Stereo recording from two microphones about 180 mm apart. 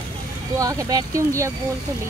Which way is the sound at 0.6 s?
20° right (ahead or behind).